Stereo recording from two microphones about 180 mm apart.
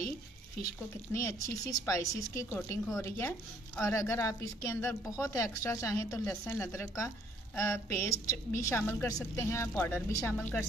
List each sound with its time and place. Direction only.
1.1 s a woman's voice: 15° left (ahead or behind)